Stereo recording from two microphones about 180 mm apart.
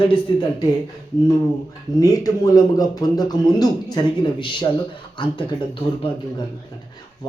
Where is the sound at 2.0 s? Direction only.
20° left (ahead or behind).